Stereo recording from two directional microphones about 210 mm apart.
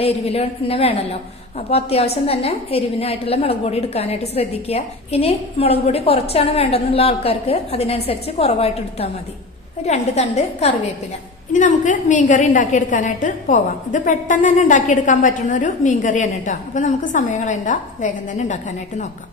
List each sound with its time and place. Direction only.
0.0 s a woman's voice: 30° left (ahead or behind)